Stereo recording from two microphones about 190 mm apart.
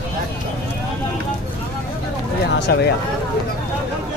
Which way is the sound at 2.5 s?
60° left (ahead or behind).